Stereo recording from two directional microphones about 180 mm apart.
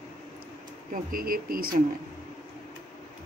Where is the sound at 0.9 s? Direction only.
55° right (ahead or behind).